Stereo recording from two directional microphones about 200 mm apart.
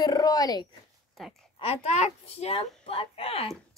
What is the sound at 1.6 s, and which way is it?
A woman's voice, 30° left (ahead or behind).